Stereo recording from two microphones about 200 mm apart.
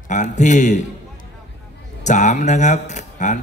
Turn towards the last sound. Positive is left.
turn(degrees=35)  # may be behind; listen again after turning